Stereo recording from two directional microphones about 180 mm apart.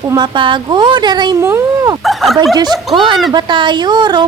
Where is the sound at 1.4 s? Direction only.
15° right (ahead or behind).